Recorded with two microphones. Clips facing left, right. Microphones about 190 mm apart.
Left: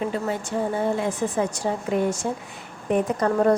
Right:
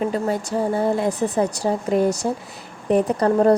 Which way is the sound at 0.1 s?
40° right (ahead or behind).